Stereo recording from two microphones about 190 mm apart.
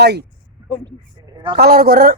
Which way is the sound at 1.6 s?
50° right (ahead or behind).